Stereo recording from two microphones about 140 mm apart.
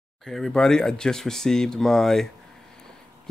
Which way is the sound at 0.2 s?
Centre (ahead or behind).